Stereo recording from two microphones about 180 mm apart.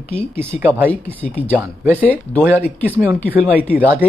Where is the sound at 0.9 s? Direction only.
10° left (ahead or behind).